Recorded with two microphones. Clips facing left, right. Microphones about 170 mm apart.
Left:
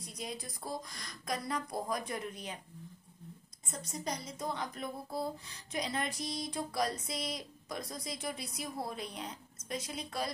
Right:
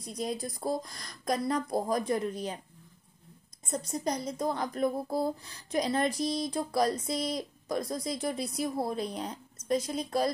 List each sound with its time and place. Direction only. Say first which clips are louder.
0.0 s speech: right 9 dB; 40° right (ahead or behind)
3.6 s speech: right 8 dB; 35° right (ahead or behind)